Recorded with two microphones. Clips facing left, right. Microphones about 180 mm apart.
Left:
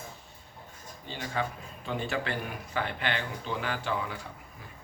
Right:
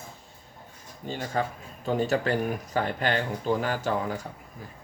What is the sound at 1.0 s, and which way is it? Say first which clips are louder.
Speech: right 4 dB; 45° right (ahead or behind).